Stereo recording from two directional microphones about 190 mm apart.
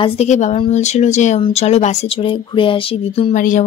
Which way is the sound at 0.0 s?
35° left (ahead or behind).